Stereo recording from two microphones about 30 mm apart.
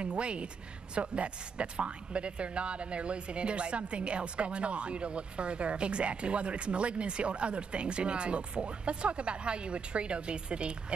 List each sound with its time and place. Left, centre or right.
0.0 s speech: right